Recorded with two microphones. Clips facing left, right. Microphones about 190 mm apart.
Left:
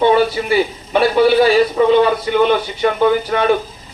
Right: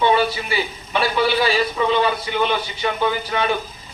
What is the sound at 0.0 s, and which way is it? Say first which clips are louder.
A man's voice: left 5 dB; 45° left (ahead or behind).